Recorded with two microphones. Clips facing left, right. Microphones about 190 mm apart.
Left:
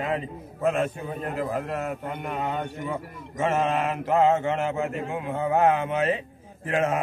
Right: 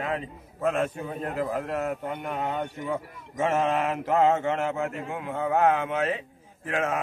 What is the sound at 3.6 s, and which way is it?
A man's voice, 15° left (ahead or behind).